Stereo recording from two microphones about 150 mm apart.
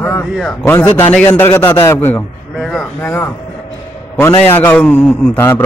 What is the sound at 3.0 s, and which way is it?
Speech, 15° left (ahead or behind).